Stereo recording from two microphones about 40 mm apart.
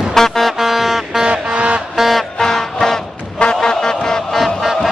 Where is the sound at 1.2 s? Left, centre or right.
Right.